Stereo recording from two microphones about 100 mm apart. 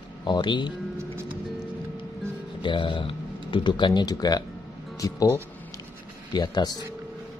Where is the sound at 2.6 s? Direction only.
55° left (ahead or behind).